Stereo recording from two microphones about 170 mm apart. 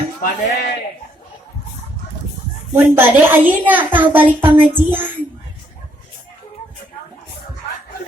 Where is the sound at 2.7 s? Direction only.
10° right (ahead or behind).